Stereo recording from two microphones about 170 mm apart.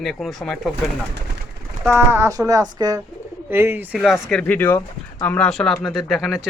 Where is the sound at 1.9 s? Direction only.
15° right (ahead or behind).